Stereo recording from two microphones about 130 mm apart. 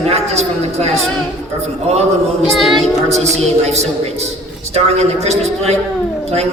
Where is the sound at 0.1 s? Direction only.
55° right (ahead or behind).